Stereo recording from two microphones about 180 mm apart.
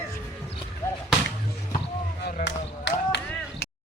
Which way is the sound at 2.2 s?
75° left (ahead or behind).